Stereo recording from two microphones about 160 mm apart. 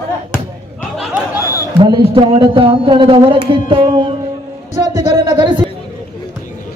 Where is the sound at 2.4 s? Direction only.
30° right (ahead or behind).